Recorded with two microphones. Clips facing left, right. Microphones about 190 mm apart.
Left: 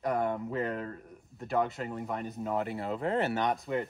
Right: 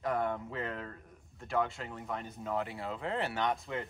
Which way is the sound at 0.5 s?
40° left (ahead or behind).